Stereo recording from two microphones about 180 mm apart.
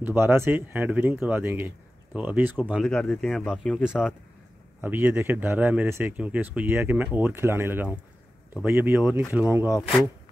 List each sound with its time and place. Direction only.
0.0 s speech: 10° right (ahead or behind)